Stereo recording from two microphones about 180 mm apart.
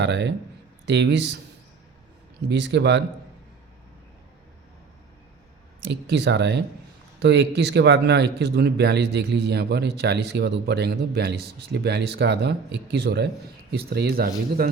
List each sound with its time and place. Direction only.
0.0 s a man's voice: 75° right (ahead or behind)
2.5 s a man's voice: 75° right (ahead or behind)
5.8 s a man's voice: 75° right (ahead or behind)